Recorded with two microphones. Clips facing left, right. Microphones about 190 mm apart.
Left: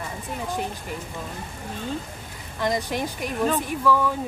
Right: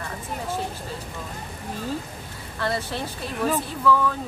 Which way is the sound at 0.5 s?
15° left (ahead or behind).